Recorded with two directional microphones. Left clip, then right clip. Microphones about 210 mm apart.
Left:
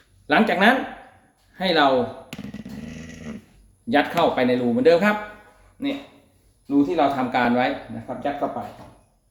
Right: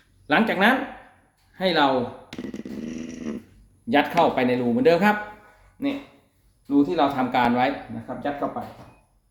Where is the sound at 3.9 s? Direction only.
15° right (ahead or behind).